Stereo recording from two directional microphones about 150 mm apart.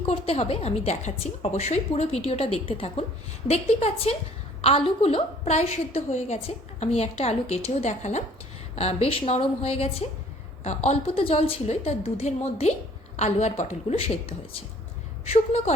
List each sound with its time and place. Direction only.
0.0 s a woman's voice: 40° left (ahead or behind)